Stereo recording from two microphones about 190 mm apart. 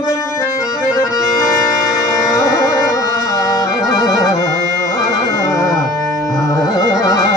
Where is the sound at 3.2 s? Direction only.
15° left (ahead or behind).